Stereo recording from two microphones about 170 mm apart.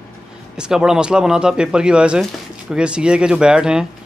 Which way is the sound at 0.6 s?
5° right (ahead or behind).